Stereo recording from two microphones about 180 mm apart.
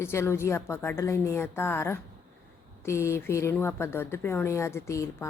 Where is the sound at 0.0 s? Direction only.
15° left (ahead or behind).